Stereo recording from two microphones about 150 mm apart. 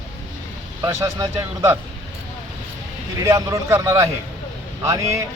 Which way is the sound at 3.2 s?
20° right (ahead or behind).